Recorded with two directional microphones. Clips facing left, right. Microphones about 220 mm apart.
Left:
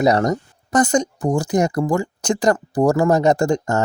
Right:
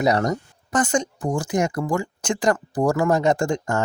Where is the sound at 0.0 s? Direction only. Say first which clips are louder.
Left 4 dB; 40° left (ahead or behind).